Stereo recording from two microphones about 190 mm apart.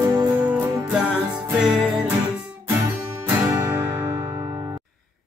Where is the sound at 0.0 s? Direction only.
20° right (ahead or behind).